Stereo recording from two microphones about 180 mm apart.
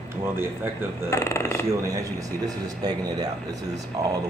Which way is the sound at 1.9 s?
20° right (ahead or behind).